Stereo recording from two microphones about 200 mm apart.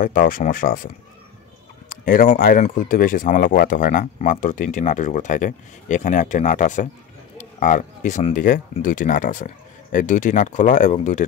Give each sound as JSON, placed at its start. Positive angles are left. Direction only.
{"t": 0.0, "sound": "speech", "side_deg": 45}
{"t": 1.9, "sound": "speech", "side_deg": 45}